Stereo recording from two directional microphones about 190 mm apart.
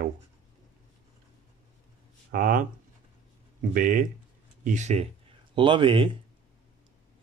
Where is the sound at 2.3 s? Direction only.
45° right (ahead or behind).